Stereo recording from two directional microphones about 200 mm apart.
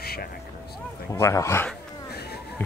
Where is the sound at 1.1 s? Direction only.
15° left (ahead or behind).